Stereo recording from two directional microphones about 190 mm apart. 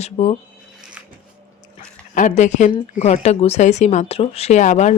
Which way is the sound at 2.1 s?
40° left (ahead or behind).